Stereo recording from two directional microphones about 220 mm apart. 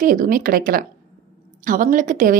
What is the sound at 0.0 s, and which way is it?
Speech, 40° right (ahead or behind).